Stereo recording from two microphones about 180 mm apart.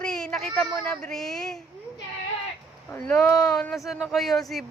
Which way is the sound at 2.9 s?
10° left (ahead or behind).